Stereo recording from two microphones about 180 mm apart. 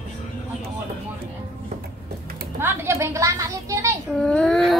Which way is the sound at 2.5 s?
15° right (ahead or behind).